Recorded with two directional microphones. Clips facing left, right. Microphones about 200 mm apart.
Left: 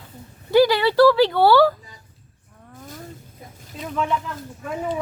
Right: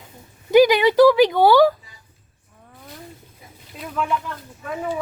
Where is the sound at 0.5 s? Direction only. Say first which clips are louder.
Right 2 dB; 15° right (ahead or behind).